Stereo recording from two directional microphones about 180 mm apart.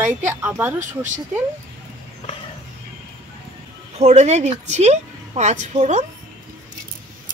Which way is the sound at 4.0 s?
40° right (ahead or behind).